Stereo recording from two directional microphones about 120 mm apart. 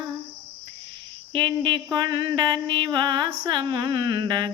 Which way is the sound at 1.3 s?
40° right (ahead or behind).